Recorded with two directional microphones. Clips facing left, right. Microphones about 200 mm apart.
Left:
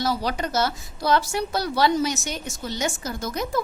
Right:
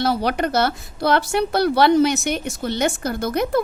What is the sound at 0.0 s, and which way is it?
Speech, 60° right (ahead or behind).